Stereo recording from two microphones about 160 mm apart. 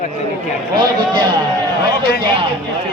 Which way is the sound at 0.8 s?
25° right (ahead or behind).